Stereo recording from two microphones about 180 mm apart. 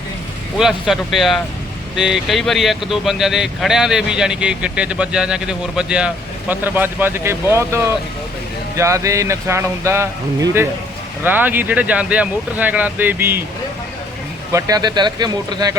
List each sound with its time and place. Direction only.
0.6 s speech: centre (ahead or behind)
14.5 s speech: 20° right (ahead or behind)